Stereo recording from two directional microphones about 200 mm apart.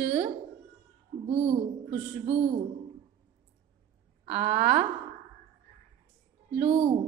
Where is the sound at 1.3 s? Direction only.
30° right (ahead or behind).